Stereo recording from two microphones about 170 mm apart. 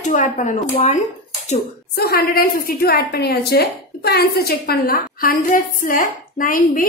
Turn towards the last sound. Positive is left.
turn(degrees=55)  # may be behind; listen again after turning